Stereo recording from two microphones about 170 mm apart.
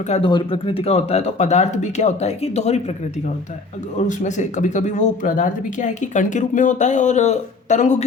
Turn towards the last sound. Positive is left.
turn(degrees=45)  # may be behind; listen again after turning